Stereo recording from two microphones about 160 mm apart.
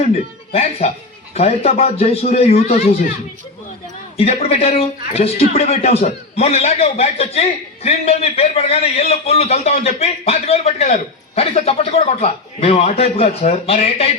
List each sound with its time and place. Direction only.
0.5 s a man's voice: 40° left (ahead or behind)
4.2 s a man's voice: 40° left (ahead or behind)